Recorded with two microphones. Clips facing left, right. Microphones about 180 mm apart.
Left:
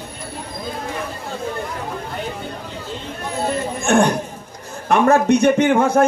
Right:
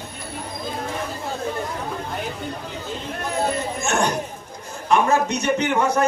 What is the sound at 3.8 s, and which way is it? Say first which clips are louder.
A man's voice: left 8 dB; 55° left (ahead or behind).